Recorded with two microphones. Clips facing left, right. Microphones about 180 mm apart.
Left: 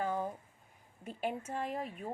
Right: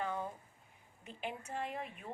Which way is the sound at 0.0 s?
40° left (ahead or behind).